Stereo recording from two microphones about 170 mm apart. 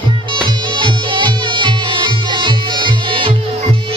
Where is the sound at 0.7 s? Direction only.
30° right (ahead or behind).